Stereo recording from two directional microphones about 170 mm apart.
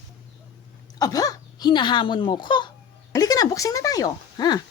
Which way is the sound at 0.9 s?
20° left (ahead or behind).